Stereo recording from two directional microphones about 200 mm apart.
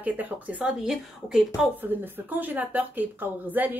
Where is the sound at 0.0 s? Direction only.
5° right (ahead or behind).